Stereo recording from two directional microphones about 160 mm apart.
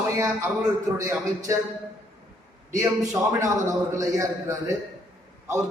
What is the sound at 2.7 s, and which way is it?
A man's voice, 20° right (ahead or behind).